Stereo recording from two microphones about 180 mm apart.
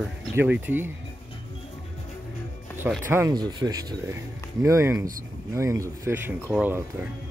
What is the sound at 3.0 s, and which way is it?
Speech, 15° right (ahead or behind).